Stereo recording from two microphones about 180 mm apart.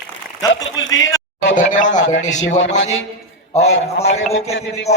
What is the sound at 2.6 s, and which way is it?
Speech, 90° left.